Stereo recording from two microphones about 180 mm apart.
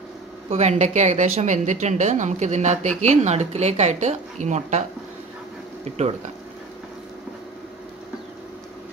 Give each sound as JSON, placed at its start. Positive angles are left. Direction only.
{"t": 0.5, "sound": "a woman's voice", "side_deg": -40}
{"t": 5.9, "sound": "a woman's voice", "side_deg": -35}